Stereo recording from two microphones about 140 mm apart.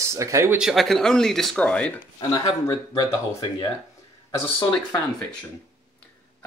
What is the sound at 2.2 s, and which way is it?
Speech, 25° left (ahead or behind).